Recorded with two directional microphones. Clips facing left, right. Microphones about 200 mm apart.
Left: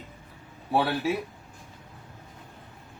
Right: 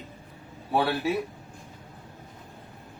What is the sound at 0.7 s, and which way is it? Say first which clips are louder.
Speech: even; centre (ahead or behind).